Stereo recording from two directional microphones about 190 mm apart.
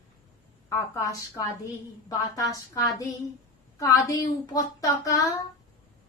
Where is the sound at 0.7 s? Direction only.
15° left (ahead or behind).